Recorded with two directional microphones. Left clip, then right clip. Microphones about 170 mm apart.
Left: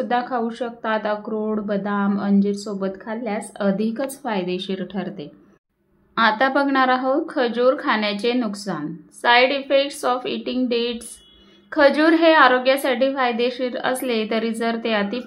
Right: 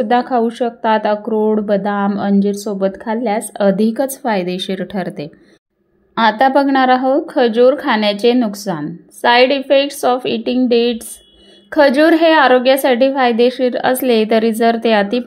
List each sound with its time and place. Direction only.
0.0 s speech: 45° right (ahead or behind)
6.1 s speech: 30° right (ahead or behind)